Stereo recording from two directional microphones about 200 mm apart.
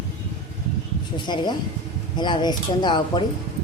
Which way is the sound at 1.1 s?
20° left (ahead or behind).